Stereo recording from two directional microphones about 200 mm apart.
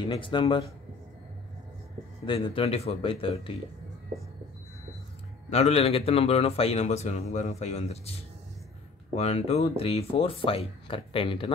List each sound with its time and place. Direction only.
0.1 s speech: 25° left (ahead or behind)
2.2 s speech: 25° left (ahead or behind)
5.5 s a man's voice: 30° left (ahead or behind)